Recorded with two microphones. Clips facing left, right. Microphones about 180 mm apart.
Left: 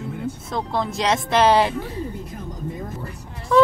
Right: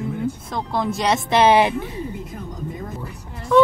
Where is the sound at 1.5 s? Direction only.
15° right (ahead or behind).